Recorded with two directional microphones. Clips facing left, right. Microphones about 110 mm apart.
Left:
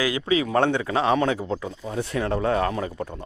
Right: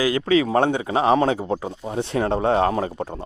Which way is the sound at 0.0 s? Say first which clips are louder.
Right 4 dB; 40° right (ahead or behind).